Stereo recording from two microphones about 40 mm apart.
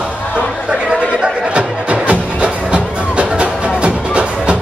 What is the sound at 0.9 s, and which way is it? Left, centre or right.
Chatter, centre.